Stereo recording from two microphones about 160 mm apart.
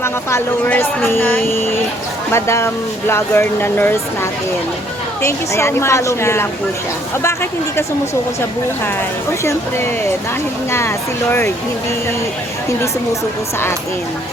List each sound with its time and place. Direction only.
0.0 s speech: 15° left (ahead or behind)
9.4 s speech: 15° left (ahead or behind)